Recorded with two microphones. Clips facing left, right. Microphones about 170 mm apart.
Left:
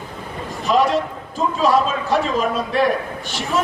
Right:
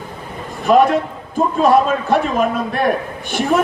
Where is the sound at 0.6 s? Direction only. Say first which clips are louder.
Right 5 dB; 55° right (ahead or behind).